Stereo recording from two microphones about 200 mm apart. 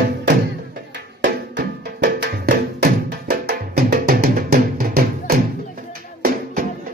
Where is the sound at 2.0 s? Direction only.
50° right (ahead or behind).